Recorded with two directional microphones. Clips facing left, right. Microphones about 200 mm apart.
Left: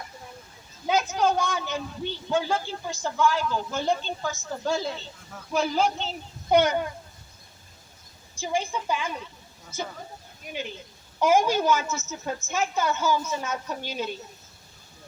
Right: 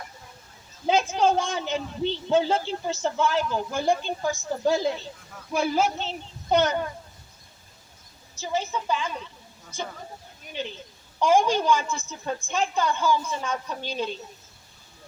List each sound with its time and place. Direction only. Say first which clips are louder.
0.9 s a man's voice: right 2 dB; 30° right (ahead or behind); by 6.1 s 5° right (ahead or behind)
6.5 s a woman's voice: left 1 dB; 10° left (ahead or behind)
8.4 s a woman's voice: even; 10° left (ahead or behind)
10.5 s a woman's voice: right 1 dB; 10° left (ahead or behind)